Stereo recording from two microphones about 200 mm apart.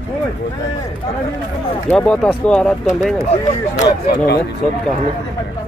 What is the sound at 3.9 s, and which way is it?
Speech, 55° left (ahead or behind).